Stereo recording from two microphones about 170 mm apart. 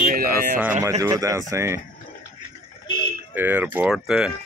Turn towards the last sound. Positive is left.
turn(degrees=-5)  # may be behind; listen again after turning